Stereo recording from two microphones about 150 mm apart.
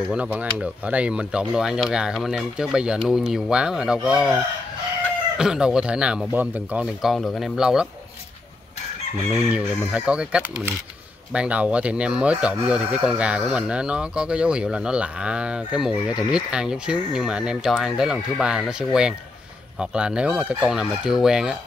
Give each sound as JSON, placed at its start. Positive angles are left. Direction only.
{"t": 0.1, "sound": "speech", "side_deg": -10}
{"t": 5.4, "sound": "speech", "side_deg": -5}
{"t": 9.5, "sound": "speech", "side_deg": -5}